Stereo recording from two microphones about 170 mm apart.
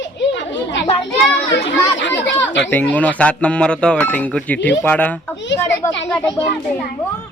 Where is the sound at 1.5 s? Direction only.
90° left.